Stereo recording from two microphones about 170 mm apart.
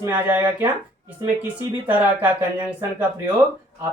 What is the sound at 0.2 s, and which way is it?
Speech, 10° right (ahead or behind).